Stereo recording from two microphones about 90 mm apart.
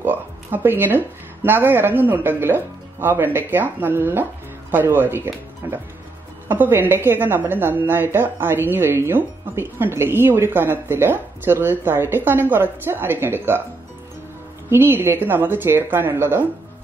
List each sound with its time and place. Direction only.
0.0 s a woman's voice: 20° right (ahead or behind)
14.7 s a woman's voice: 25° right (ahead or behind)